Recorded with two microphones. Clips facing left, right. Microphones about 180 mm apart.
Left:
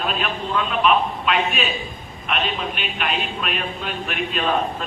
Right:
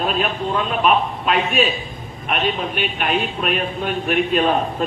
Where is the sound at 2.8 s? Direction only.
45° right (ahead or behind).